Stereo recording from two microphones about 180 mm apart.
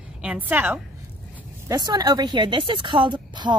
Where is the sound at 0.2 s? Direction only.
10° right (ahead or behind).